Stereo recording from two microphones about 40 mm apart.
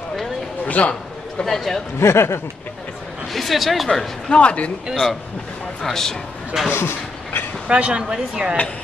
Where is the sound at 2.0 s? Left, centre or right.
Left.